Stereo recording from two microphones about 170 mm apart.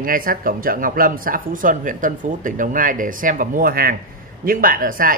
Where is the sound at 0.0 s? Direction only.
55° right (ahead or behind).